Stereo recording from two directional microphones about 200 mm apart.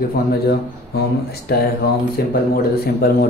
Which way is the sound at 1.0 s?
50° left (ahead or behind).